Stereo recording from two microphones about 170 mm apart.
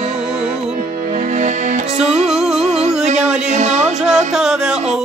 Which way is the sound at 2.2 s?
Centre (ahead or behind).